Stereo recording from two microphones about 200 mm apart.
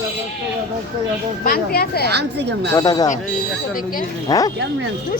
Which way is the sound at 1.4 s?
50° left (ahead or behind).